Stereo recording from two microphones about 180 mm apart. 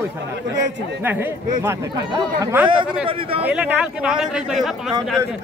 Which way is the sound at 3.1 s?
30° right (ahead or behind).